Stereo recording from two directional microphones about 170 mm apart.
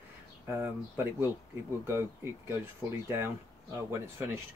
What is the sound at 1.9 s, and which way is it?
Speech, 15° right (ahead or behind).